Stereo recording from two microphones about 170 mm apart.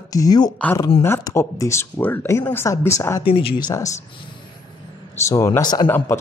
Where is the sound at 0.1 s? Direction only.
20° left (ahead or behind).